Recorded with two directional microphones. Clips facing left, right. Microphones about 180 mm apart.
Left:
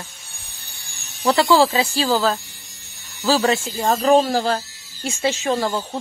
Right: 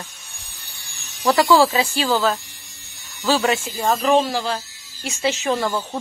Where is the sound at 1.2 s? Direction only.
25° left (ahead or behind).